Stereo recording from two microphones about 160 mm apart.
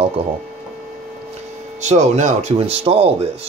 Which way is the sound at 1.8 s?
45° right (ahead or behind).